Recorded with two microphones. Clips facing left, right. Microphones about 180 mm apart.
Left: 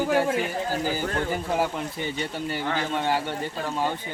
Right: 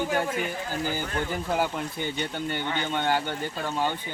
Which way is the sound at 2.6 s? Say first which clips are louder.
Left 3 dB; 35° left (ahead or behind).